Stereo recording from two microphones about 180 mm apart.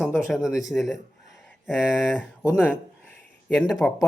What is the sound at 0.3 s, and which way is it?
Speech, centre (ahead or behind).